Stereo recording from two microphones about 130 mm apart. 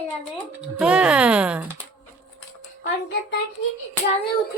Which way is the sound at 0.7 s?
5° right (ahead or behind).